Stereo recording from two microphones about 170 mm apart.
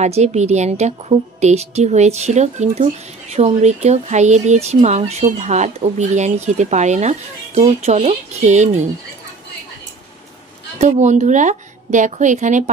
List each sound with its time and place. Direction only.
0.0 s a woman's voice: 40° right (ahead or behind)
10.8 s a woman's voice: 45° right (ahead or behind)